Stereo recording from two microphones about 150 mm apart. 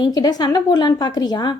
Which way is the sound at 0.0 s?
25° left (ahead or behind).